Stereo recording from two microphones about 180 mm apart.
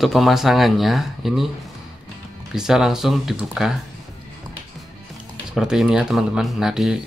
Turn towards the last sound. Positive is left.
turn(degrees=0)  # may be behind; listen again after turning